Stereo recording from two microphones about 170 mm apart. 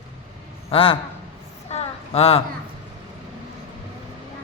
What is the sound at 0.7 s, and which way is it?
Speech, 30° left (ahead or behind).